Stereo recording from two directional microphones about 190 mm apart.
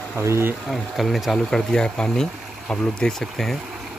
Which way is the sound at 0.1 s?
15° right (ahead or behind).